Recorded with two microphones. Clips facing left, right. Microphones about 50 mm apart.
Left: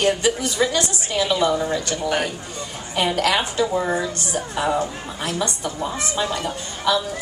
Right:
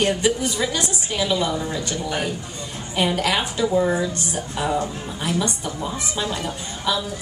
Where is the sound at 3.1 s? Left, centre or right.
Centre.